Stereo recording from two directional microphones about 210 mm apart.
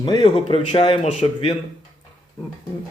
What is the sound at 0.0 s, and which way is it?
Speech, 20° left (ahead or behind).